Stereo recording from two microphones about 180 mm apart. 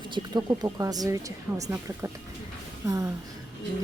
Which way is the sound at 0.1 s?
25° right (ahead or behind).